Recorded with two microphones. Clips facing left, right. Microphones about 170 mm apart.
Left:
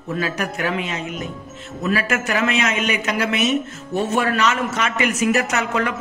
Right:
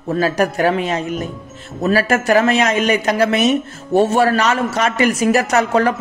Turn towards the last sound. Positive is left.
turn(degrees=-35)  # may be behind; listen again after turning